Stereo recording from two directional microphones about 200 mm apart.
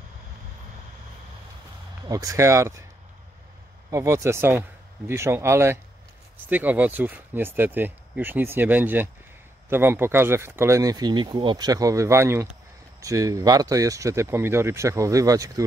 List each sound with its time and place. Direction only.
2.0 s speech: 15° right (ahead or behind)
3.9 s speech: 15° right (ahead or behind)